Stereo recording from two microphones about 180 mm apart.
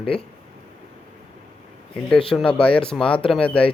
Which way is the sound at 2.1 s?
5° left (ahead or behind).